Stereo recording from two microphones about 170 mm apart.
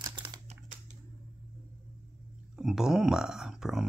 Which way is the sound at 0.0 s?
25° right (ahead or behind).